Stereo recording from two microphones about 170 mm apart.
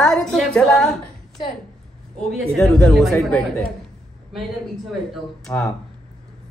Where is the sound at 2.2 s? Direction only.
5° left (ahead or behind).